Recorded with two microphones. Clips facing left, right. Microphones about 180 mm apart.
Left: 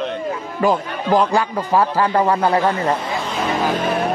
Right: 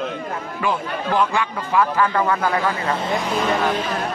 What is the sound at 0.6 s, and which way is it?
A man's voice, 40° left (ahead or behind).